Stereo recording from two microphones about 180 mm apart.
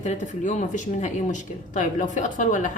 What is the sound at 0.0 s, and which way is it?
Speech, 40° left (ahead or behind).